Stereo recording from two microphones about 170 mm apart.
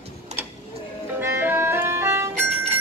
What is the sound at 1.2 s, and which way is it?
Music, 15° right (ahead or behind).